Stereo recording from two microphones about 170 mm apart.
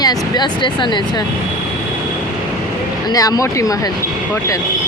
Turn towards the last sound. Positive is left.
turn(degrees=20)  # may be behind; listen again after turning